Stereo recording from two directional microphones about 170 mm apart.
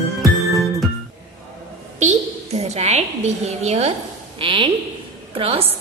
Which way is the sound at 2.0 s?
40° right (ahead or behind).